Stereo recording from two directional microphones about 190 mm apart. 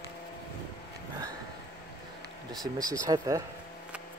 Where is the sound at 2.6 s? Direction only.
20° right (ahead or behind).